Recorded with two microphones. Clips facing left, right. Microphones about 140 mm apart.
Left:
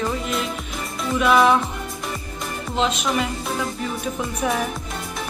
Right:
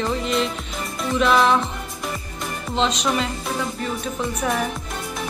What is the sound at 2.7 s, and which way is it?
Speech, 5° left (ahead or behind).